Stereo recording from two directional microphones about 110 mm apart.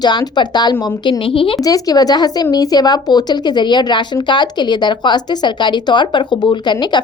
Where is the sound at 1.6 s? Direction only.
35° left (ahead or behind).